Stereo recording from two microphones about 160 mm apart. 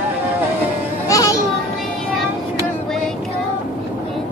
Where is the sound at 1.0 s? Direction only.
20° left (ahead or behind).